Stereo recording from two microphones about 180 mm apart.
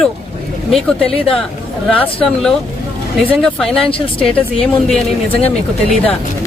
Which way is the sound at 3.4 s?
5° left (ahead or behind).